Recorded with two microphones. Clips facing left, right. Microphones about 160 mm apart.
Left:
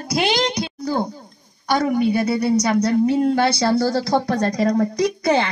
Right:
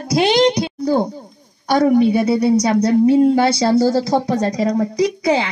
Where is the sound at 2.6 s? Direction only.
30° right (ahead or behind).